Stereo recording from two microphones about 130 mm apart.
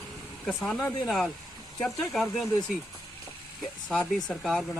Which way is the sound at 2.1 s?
Centre (ahead or behind).